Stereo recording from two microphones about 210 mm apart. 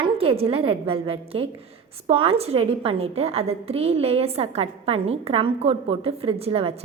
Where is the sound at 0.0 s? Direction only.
25° right (ahead or behind).